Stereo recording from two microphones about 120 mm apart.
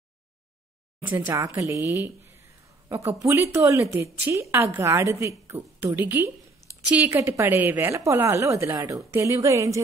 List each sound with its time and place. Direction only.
1.1 s a woman's voice: 30° right (ahead or behind)